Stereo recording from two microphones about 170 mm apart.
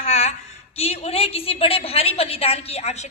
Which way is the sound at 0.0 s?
40° left (ahead or behind).